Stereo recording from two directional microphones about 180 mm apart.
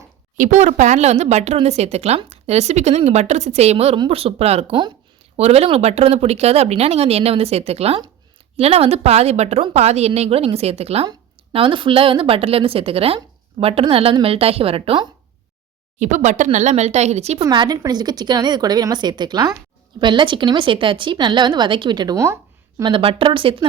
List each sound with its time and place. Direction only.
0.3 s speech: 45° right (ahead or behind)
17.4 s speech: 25° right (ahead or behind)
22.8 s speech: 30° right (ahead or behind)